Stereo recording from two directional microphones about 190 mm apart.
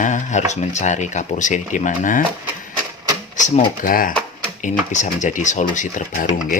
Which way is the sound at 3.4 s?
40° left (ahead or behind).